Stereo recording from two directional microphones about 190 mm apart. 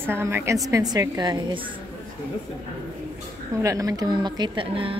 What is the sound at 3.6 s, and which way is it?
A woman's voice, 20° right (ahead or behind).